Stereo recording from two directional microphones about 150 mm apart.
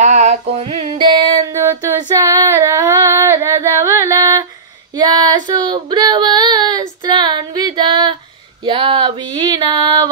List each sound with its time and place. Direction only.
0.0 s music: 50° right (ahead or behind); by 1.5 s 35° right (ahead or behind)
1.5 s a sound: 20° right (ahead or behind)
4.9 s child singing: 25° right (ahead or behind)
7.0 s female singing: 30° right (ahead or behind)